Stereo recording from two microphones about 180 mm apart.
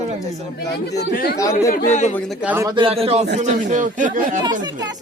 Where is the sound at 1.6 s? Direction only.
50° left (ahead or behind).